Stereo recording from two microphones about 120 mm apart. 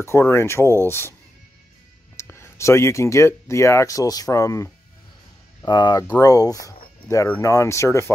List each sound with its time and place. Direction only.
0.0 s speech: 20° left (ahead or behind)
2.1 s speech: 25° left (ahead or behind)
5.7 s speech: 35° left (ahead or behind)